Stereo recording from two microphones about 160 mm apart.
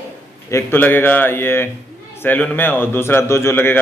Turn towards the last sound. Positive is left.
turn(degrees=15)  # may be behind; listen again after turning